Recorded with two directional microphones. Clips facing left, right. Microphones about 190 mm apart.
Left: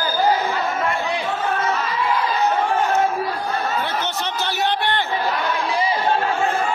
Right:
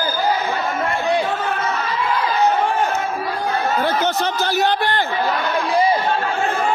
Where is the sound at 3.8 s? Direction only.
40° right (ahead or behind).